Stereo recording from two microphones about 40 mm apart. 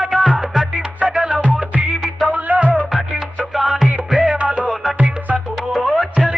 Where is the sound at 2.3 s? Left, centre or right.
Right.